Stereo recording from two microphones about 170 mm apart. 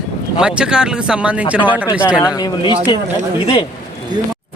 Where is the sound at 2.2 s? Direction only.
25° left (ahead or behind).